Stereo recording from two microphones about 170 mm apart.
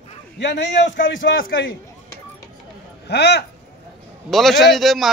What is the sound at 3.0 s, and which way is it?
Speech, 75° left (ahead or behind).